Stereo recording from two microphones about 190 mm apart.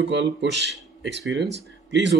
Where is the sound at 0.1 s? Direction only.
70° right (ahead or behind).